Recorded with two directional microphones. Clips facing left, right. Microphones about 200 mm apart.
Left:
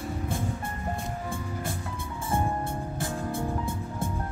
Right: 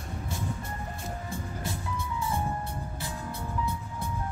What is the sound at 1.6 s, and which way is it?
Music, 50° left (ahead or behind).